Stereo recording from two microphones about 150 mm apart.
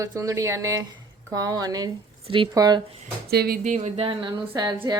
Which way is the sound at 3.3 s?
90° right.